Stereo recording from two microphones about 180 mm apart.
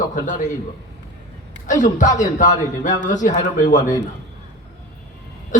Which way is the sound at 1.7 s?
45° left (ahead or behind).